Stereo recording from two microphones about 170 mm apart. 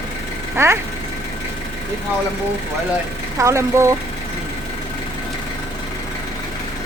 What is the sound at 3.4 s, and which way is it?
Speech, 15° right (ahead or behind).